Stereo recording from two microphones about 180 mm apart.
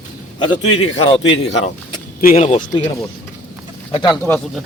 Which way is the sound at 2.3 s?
35° left (ahead or behind).